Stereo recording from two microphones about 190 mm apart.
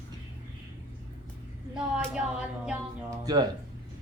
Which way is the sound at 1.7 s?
5° right (ahead or behind).